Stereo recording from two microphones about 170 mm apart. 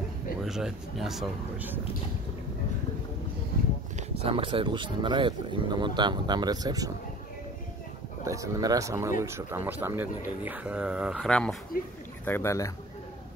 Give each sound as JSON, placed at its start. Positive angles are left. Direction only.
{"t": 0.4, "sound": "speech", "side_deg": -5}
{"t": 4.2, "sound": "speech", "side_deg": -30}
{"t": 8.3, "sound": "speech", "side_deg": -20}
{"t": 11.2, "sound": "speech", "side_deg": 5}
{"t": 11.7, "sound": "speech", "side_deg": 55}
{"t": 12.3, "sound": "speech", "side_deg": 15}